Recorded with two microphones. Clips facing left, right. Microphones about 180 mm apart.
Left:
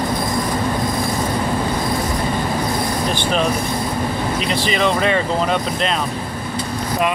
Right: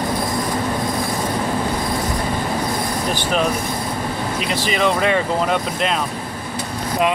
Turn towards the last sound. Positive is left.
turn(degrees=-10)  # may be behind; listen again after turning